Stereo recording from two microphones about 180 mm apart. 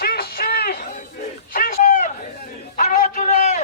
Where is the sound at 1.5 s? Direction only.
45° left (ahead or behind).